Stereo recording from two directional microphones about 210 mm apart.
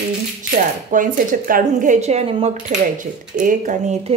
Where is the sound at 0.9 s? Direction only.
40° right (ahead or behind).